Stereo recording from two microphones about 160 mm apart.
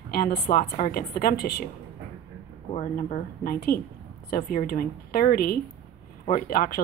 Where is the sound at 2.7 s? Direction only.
45° left (ahead or behind).